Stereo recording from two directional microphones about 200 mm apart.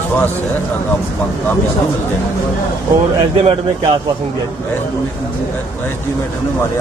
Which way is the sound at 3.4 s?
25° right (ahead or behind).